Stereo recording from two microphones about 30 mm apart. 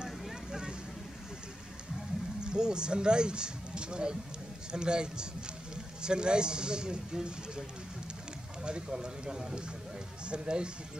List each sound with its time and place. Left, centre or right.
0.5 s vehicle: right
2.4 s speech: right
8.6 s speech: right
10.2 s speech: right